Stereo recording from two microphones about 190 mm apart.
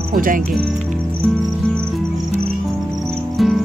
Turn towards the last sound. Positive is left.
turn(degrees=0)  # may be behind; listen again after turning